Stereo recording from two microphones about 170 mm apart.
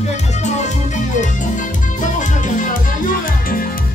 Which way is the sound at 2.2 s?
50° left (ahead or behind).